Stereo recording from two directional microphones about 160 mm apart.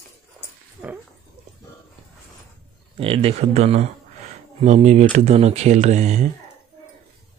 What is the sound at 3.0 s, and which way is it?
Speech, 35° right (ahead or behind).